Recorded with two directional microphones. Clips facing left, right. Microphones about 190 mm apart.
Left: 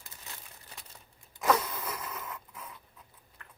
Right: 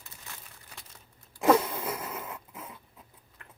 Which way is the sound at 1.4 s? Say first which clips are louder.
Right 5 dB; 25° right (ahead or behind).